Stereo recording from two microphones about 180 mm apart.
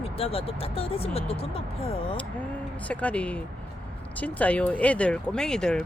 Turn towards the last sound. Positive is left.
turn(degrees=5)  # may be behind; listen again after turning